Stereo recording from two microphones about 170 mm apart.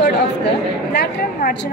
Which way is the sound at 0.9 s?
70° left (ahead or behind).